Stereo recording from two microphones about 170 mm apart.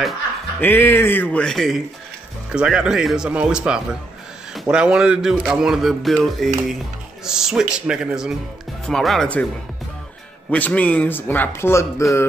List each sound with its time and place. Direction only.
0.6 s a man's voice: 10° left (ahead or behind)
10.5 s speech: 10° left (ahead or behind)